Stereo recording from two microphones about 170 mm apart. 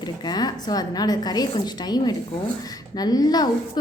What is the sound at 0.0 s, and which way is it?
A woman's voice, 25° left (ahead or behind).